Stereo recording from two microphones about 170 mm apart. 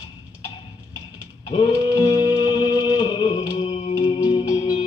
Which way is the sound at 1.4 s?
30° left (ahead or behind).